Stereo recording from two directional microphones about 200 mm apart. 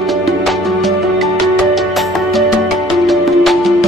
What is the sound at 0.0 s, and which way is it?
Music, centre (ahead or behind).